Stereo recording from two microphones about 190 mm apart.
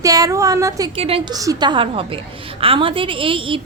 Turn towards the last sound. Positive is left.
turn(degrees=-25)  # may be behind; listen again after turning